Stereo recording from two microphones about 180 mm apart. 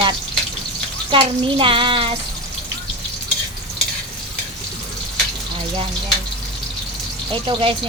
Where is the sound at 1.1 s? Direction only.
30° right (ahead or behind).